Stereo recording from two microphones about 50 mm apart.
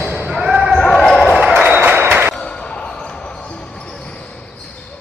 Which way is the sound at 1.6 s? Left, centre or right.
Right.